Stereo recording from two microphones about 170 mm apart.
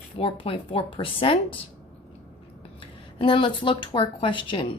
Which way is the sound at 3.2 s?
30° left (ahead or behind).